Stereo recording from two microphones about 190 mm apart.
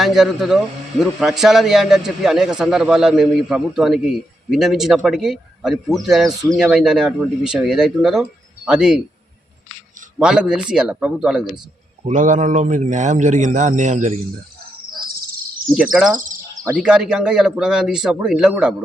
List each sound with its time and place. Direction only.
0.0 s a man's voice: centre (ahead or behind)
10.2 s a man's voice: 5° right (ahead or behind)
12.0 s a man's voice: 40° right (ahead or behind)
15.7 s a man's voice: 5° right (ahead or behind)
16.1 s bird: 45° right (ahead or behind)
16.7 s a man's voice: 5° right (ahead or behind)